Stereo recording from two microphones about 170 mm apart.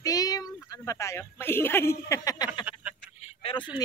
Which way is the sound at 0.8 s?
15° left (ahead or behind).